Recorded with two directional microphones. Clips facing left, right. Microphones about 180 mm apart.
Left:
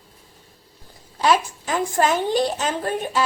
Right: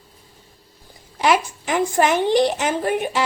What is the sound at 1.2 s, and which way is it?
A woman's voice, 15° right (ahead or behind).